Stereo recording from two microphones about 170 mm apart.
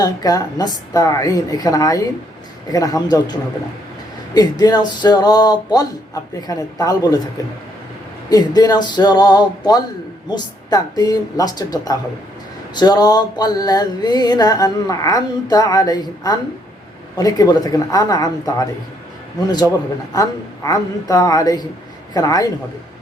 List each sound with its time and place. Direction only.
0.0 s mantra: 20° left (ahead or behind)
4.4 s mantra: 25° left (ahead or behind)